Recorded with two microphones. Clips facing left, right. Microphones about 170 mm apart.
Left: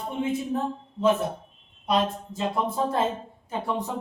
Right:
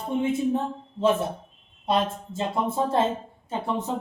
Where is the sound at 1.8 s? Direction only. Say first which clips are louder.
Even; 25° right (ahead or behind).